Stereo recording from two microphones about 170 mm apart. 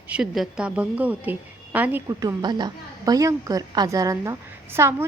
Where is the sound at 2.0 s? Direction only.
25° right (ahead or behind).